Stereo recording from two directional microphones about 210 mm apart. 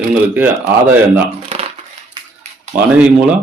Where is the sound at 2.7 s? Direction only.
5° right (ahead or behind).